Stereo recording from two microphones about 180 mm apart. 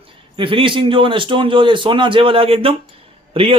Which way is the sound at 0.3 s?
30° right (ahead or behind).